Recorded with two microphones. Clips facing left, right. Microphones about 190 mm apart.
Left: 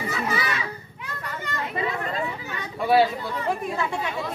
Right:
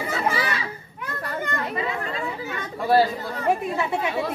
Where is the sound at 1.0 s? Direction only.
50° right (ahead or behind).